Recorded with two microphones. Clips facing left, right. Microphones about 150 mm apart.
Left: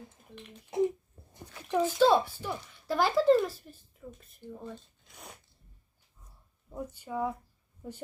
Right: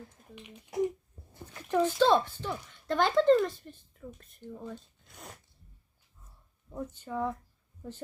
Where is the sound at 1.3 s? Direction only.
10° left (ahead or behind).